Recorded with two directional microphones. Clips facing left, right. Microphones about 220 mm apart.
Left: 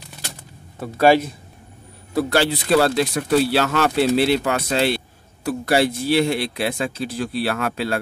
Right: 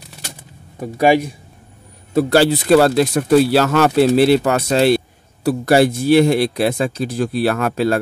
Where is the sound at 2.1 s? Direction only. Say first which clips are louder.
Right 6 dB; 35° right (ahead or behind).